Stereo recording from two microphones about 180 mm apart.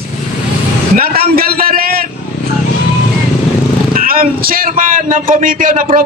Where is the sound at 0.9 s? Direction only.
55° right (ahead or behind).